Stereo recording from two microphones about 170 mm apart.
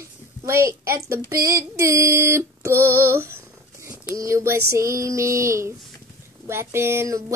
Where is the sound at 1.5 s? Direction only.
20° right (ahead or behind).